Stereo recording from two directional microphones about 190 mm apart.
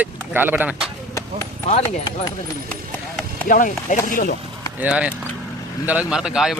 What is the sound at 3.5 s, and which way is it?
Speech, 45° left (ahead or behind).